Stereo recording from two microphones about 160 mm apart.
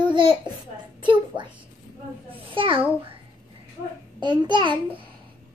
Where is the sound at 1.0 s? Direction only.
30° right (ahead or behind).